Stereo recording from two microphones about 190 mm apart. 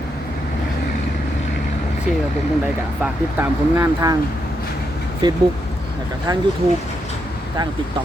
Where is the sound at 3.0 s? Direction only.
10° right (ahead or behind).